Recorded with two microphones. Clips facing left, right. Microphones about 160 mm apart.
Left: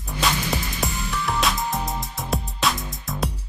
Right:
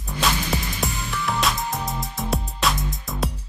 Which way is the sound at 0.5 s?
15° left (ahead or behind).